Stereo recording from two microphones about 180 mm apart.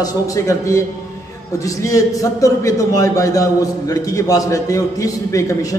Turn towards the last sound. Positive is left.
turn(degrees=15)  # may be behind; listen again after turning